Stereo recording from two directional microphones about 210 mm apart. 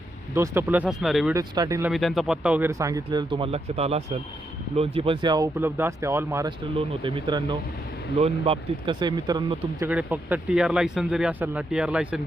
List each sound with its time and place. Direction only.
0.3 s speech: 10° right (ahead or behind)
1.3 s speech: 15° right (ahead or behind)
1.9 s speech: centre (ahead or behind); by 9.9 s 20° right (ahead or behind)
9.9 s speech: 5° right (ahead or behind)